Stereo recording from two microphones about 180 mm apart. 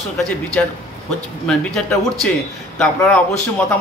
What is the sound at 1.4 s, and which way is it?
A man's voice, 5° left (ahead or behind).